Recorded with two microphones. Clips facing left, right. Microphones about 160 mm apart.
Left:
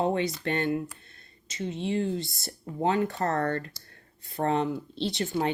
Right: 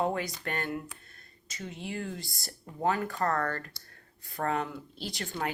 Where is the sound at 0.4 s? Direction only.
25° left (ahead or behind).